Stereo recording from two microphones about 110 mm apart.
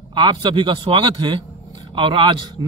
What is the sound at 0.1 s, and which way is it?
A man's voice, 45° right (ahead or behind).